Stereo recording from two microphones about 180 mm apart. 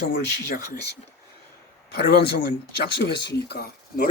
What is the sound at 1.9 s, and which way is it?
Speech, 65° left (ahead or behind).